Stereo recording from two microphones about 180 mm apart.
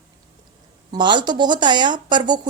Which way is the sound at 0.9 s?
25° right (ahead or behind).